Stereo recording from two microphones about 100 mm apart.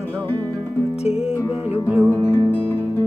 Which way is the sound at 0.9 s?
90° left.